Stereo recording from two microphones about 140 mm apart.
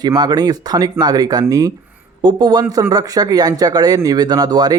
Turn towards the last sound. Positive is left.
turn(degrees=-30)  # may be behind; listen again after turning